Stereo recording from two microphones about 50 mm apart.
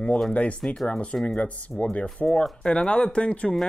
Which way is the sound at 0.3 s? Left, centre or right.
Left.